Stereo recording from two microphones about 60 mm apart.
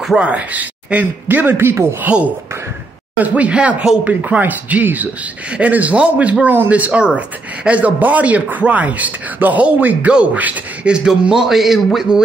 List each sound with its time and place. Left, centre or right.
0.0 s speech: centre; by 2.0 s right
2.0 s speech: centre
6.4 s speech: right
6.7 s speech: right
10.9 s a man's voice: centre